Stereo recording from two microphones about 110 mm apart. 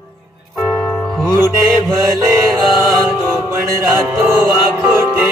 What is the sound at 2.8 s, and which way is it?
Music, centre (ahead or behind).